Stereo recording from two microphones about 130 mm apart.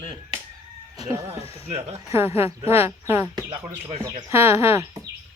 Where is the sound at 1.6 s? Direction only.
55° right (ahead or behind).